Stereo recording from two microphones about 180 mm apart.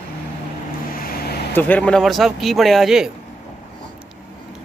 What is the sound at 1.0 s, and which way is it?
Vehicle, 60° left (ahead or behind).